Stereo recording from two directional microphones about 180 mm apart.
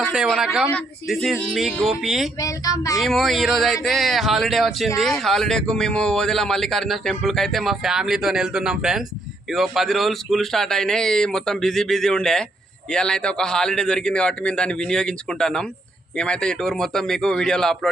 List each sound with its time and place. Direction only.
0.0 s a man's voice: centre (ahead or behind)
2.4 s speech: 20° left (ahead or behind)
3.0 s a man's voice: centre (ahead or behind)